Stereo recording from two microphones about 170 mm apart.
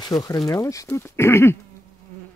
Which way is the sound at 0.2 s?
20° left (ahead or behind).